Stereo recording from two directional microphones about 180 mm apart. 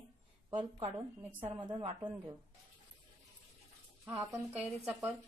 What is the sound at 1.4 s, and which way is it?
Speech, 25° right (ahead or behind).